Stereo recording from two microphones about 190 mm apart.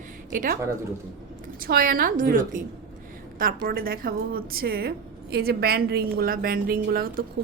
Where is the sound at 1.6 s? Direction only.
50° right (ahead or behind).